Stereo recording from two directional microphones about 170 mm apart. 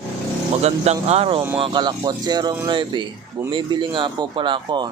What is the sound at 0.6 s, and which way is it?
Speech, 40° right (ahead or behind).